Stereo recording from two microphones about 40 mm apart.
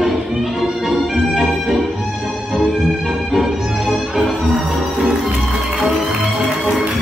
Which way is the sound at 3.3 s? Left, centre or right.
Centre.